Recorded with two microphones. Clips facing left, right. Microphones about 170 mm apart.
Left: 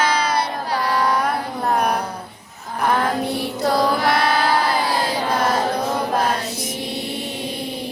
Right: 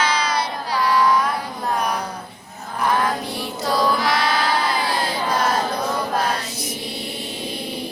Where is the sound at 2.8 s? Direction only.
55° left (ahead or behind).